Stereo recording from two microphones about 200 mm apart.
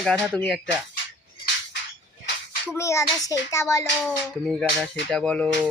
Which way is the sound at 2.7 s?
15° left (ahead or behind).